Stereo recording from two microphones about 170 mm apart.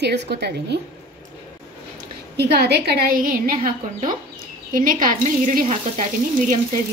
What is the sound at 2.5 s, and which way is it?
A woman's voice, 70° right (ahead or behind).